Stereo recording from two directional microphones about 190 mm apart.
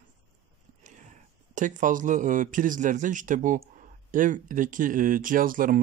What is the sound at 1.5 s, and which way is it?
A man's voice, 45° right (ahead or behind).